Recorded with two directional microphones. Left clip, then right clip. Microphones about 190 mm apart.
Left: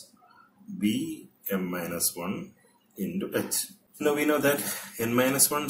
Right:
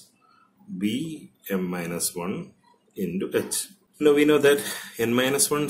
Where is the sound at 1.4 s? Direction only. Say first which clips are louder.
Right 2 dB; 50° right (ahead or behind).